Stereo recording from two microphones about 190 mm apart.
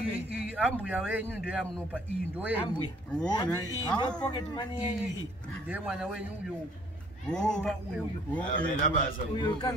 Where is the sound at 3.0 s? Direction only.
5° left (ahead or behind).